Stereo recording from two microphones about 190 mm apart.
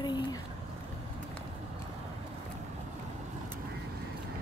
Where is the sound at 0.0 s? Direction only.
20° left (ahead or behind).